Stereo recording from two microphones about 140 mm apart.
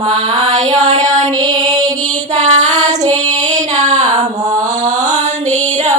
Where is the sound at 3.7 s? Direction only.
60° right (ahead or behind).